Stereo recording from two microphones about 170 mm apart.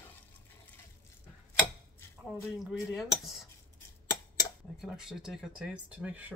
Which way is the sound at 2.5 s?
Centre (ahead or behind).